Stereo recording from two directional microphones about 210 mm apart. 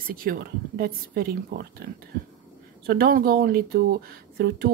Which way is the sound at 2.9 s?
45° right (ahead or behind).